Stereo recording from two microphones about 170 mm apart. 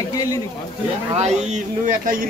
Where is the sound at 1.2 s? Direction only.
40° right (ahead or behind).